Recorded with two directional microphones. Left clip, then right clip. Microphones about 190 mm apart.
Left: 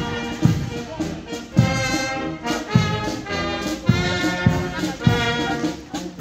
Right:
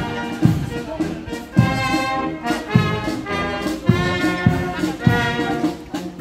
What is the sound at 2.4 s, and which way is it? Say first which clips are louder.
Music: right 2 dB; 20° left (ahead or behind).